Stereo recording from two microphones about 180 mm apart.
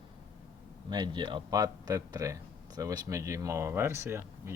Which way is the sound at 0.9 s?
25° right (ahead or behind).